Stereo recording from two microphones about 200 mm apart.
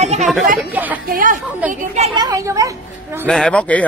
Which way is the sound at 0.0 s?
35° right (ahead or behind).